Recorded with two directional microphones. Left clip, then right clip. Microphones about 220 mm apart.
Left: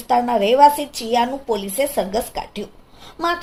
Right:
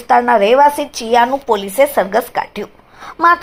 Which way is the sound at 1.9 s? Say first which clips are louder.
Right 7 dB; 50° right (ahead or behind).